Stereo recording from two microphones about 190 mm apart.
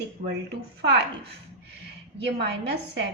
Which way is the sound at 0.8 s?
65° right (ahead or behind).